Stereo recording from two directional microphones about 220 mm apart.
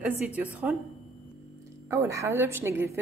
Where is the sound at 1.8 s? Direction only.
10° right (ahead or behind).